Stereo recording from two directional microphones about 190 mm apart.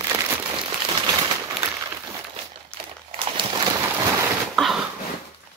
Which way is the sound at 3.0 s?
25° right (ahead or behind).